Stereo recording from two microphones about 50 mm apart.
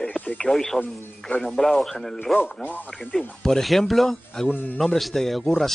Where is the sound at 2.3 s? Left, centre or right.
Left.